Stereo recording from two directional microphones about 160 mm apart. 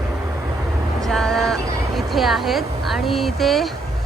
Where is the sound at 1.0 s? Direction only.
Centre (ahead or behind).